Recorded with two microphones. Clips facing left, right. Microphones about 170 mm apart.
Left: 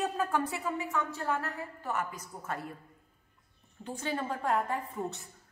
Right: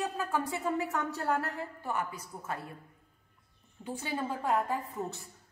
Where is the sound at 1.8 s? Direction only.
10° right (ahead or behind).